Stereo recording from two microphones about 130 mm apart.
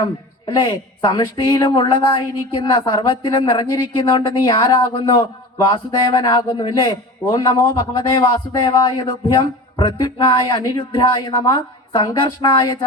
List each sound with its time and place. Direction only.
0.0 s a woman's voice: 40° left (ahead or behind)